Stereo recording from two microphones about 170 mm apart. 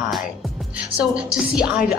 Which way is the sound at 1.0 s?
5° right (ahead or behind).